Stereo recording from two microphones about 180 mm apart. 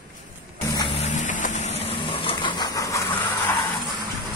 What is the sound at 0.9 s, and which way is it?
Vehicle, 40° left (ahead or behind).